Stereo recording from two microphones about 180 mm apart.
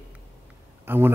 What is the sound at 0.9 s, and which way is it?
Speech, 10° right (ahead or behind).